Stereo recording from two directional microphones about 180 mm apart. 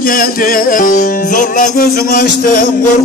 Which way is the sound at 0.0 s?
50° left (ahead or behind).